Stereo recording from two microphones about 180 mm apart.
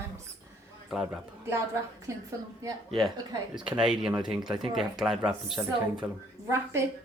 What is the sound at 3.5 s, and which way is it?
Speech, 5° right (ahead or behind).